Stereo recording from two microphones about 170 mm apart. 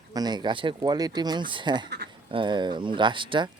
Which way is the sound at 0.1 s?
25° right (ahead or behind).